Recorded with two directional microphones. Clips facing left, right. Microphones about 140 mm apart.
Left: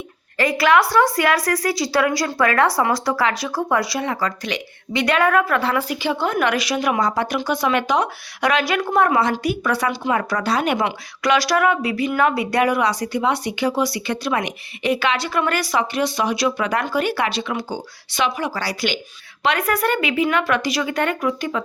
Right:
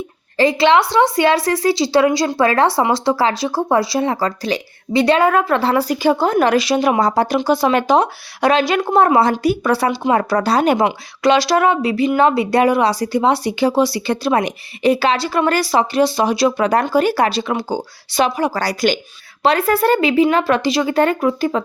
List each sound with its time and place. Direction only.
0.3 s a woman's voice: 25° right (ahead or behind); by 18.9 s 45° right (ahead or behind)
19.4 s a woman's voice: 30° right (ahead or behind)